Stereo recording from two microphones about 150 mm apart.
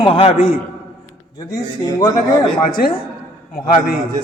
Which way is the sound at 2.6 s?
70° left (ahead or behind).